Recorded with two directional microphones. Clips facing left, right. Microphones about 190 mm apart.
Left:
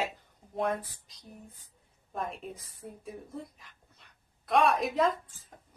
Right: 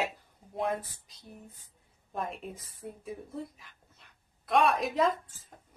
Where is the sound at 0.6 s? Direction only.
5° right (ahead or behind).